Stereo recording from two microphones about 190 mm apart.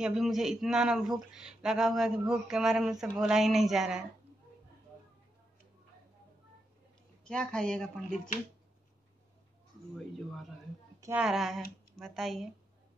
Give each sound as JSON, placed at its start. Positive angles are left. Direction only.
{"t": 0.0, "sound": "speech", "side_deg": 0}
{"t": 7.2, "sound": "speech", "side_deg": 5}
{"t": 9.9, "sound": "speech", "side_deg": 0}
{"t": 11.0, "sound": "a sound", "side_deg": -15}
{"t": 11.2, "sound": "speech", "side_deg": 0}